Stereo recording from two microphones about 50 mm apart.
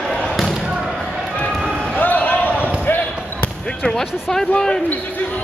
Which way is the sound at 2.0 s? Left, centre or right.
Left.